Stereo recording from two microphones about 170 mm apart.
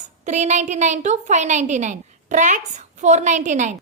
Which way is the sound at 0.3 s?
45° right (ahead or behind).